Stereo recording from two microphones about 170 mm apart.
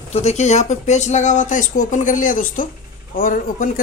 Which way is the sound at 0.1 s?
40° left (ahead or behind).